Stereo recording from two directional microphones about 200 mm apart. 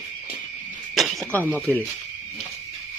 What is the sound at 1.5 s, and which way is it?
Speech, 5° left (ahead or behind).